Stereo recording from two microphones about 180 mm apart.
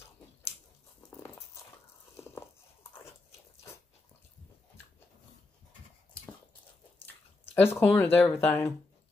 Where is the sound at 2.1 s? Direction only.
15° left (ahead or behind).